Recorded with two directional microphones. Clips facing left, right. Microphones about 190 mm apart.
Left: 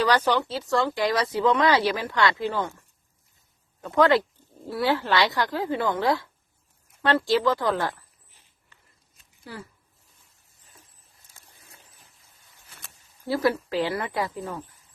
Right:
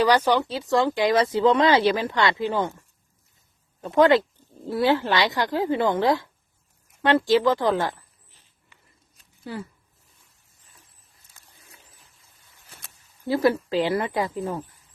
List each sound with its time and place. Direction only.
0.0 s speech: 10° right (ahead or behind)
3.8 s speech: 20° right (ahead or behind)
9.4 s speech: 25° right (ahead or behind)
13.2 s speech: 20° right (ahead or behind)